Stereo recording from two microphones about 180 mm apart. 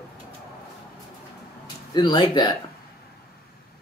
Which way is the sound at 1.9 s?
25° left (ahead or behind).